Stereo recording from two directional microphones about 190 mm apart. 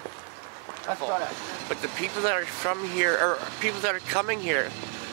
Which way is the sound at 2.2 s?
10° right (ahead or behind).